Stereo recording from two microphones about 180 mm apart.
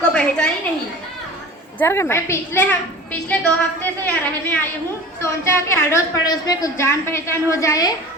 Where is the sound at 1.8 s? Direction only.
15° left (ahead or behind).